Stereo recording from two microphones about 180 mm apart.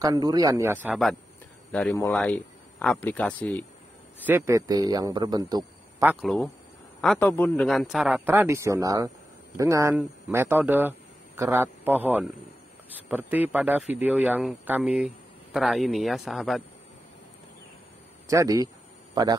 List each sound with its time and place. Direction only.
0.0 s speech: 20° right (ahead or behind)
1.7 s a man's voice: 10° left (ahead or behind)
4.2 s speech: 10° right (ahead or behind)
6.2 s a man's voice: centre (ahead or behind)
18.3 s speech: 20° right (ahead or behind)